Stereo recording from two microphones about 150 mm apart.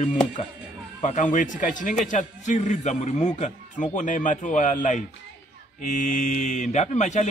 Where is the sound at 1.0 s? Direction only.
55° left (ahead or behind).